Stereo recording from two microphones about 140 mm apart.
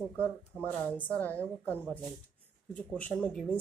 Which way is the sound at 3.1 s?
5° left (ahead or behind).